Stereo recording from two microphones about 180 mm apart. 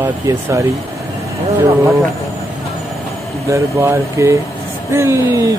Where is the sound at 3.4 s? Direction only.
15° right (ahead or behind).